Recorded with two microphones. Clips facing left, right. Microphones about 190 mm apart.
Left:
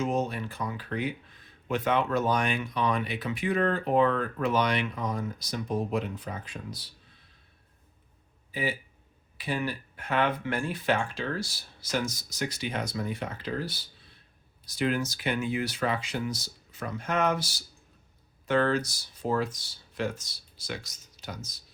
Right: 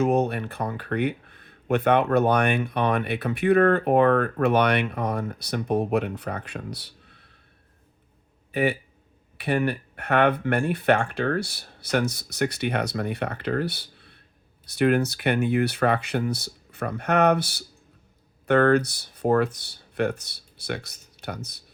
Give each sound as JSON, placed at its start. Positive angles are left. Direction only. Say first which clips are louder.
{"t": 0.0, "sound": "speech", "louder": "right 7 dB", "side_deg": -60}
{"t": 8.5, "sound": "speech", "louder": "right 8 dB", "side_deg": -65}